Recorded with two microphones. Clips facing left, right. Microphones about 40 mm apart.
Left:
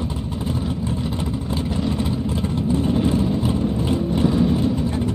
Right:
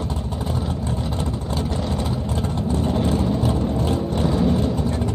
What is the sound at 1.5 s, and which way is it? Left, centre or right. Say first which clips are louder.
Vehicle: left 2 dB; centre.